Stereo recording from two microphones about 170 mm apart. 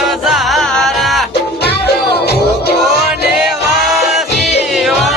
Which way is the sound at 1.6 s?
70° left (ahead or behind).